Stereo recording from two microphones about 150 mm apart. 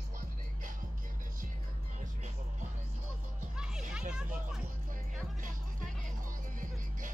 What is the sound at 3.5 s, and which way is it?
Music, 5° right (ahead or behind).